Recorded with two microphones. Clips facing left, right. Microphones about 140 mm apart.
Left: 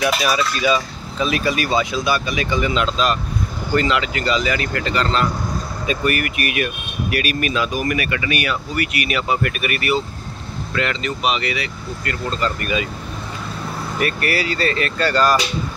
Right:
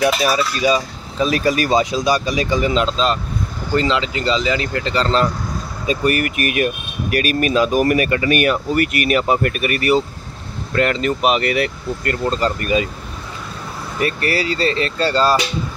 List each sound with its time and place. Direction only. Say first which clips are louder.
0.0 s speech: right 2 dB; 35° right (ahead or behind)
13.9 s speech: right 2 dB; 30° right (ahead or behind)